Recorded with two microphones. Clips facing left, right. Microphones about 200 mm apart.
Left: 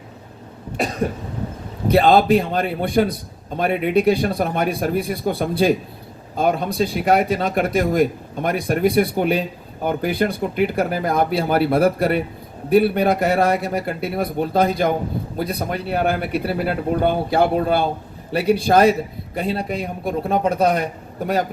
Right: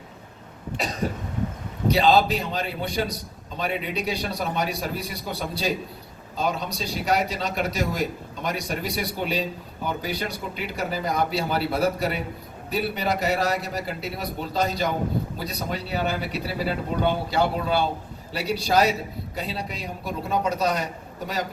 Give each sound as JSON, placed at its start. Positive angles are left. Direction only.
{"t": 0.8, "sound": "a man's voice", "side_deg": 55}